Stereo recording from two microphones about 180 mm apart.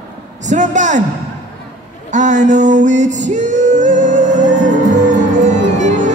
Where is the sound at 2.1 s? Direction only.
45° right (ahead or behind).